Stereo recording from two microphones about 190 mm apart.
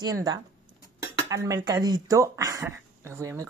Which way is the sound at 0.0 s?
20° right (ahead or behind).